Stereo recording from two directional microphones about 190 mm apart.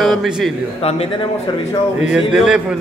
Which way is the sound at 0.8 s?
30° left (ahead or behind).